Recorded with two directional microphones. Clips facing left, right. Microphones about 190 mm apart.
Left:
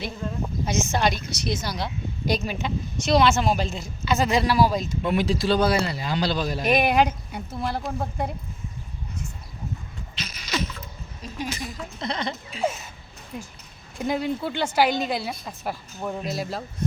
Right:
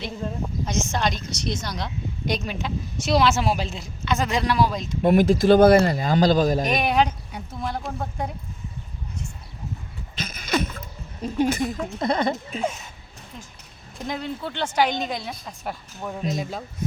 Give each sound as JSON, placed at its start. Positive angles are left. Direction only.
{"t": 0.6, "sound": "a woman's voice", "side_deg": 5}
{"t": 5.0, "sound": "speech", "side_deg": -45}
{"t": 6.7, "sound": "speech", "side_deg": 10}
{"t": 10.2, "sound": "speech", "side_deg": -50}
{"t": 12.6, "sound": "a woman's voice", "side_deg": 5}